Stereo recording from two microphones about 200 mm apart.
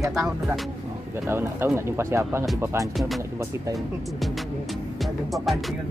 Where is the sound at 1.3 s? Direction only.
10° right (ahead or behind).